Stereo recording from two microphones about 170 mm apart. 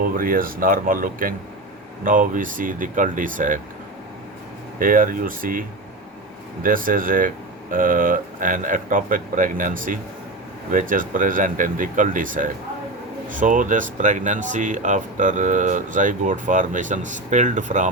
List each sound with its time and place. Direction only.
0.0 s speech: 55° right (ahead or behind)
4.8 s speech: 55° right (ahead or behind)